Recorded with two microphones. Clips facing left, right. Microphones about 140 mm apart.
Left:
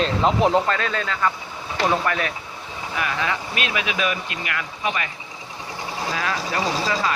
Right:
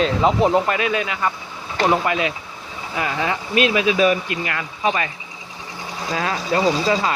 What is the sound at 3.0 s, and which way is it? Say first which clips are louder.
Speech: right 3 dB; 30° right (ahead or behind).